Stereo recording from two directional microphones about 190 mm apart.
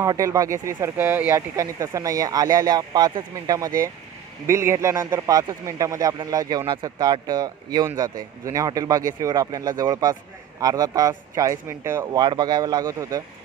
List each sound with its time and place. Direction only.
0.0 s speech: 15° right (ahead or behind)